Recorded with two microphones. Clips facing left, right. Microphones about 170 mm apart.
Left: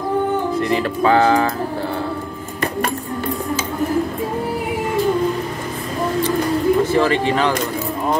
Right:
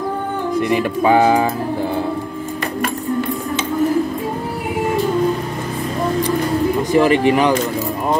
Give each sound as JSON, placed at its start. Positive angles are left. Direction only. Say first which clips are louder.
{"t": 0.6, "sound": "speech", "louder": "right 2 dB", "side_deg": -15}
{"t": 6.8, "sound": "speech", "louder": "right 3 dB", "side_deg": -15}